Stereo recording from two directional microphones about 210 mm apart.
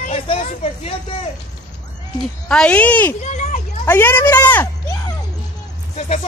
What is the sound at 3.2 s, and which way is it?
Children playing, 35° left (ahead or behind).